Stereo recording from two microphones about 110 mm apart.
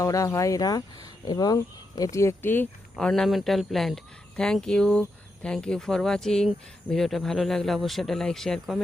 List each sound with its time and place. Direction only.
0.0 s speech: 30° left (ahead or behind)
2.9 s speech: 5° left (ahead or behind)